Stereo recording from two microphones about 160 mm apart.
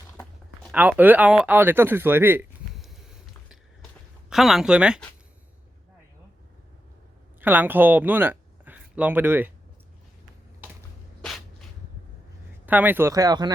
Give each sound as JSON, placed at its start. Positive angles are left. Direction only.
{"t": 0.7, "sound": "speech", "side_deg": -10}
{"t": 2.7, "sound": "a sound", "side_deg": 0}
{"t": 4.3, "sound": "speech", "side_deg": 0}
{"t": 7.4, "sound": "speech", "side_deg": -10}
{"t": 11.2, "sound": "a sound", "side_deg": 0}
{"t": 12.6, "sound": "speech", "side_deg": -10}